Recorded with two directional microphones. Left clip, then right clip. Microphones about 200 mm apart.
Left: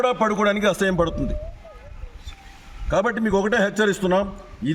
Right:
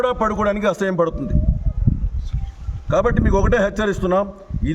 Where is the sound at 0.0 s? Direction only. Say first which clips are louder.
Right 1 dB; 15° right (ahead or behind).